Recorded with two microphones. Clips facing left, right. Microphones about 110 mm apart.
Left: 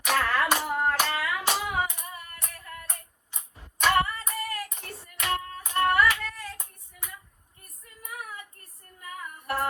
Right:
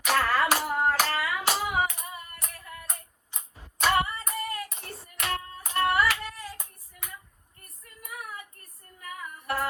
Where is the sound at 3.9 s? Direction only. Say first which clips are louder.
Left 1 dB; 25° right (ahead or behind).